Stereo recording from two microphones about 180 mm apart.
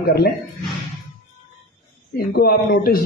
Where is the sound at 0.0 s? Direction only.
60° left (ahead or behind).